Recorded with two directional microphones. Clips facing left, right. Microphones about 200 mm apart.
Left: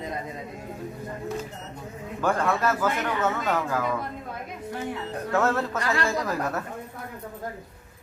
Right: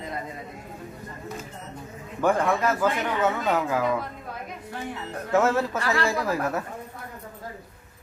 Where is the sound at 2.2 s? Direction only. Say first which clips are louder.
Right 2 dB; 15° right (ahead or behind).